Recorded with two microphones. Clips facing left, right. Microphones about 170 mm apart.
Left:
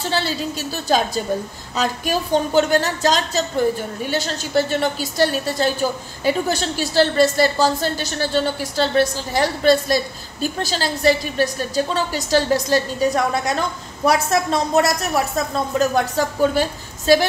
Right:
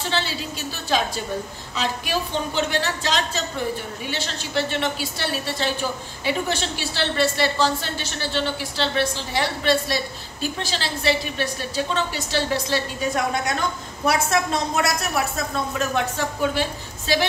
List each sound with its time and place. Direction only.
0.1 s a woman's voice: 40° left (ahead or behind)